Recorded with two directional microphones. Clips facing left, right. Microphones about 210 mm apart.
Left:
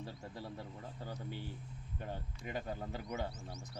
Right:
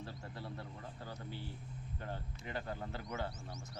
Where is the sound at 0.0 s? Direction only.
15° left (ahead or behind).